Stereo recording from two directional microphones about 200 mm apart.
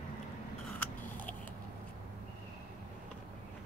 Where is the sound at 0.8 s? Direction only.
10° left (ahead or behind).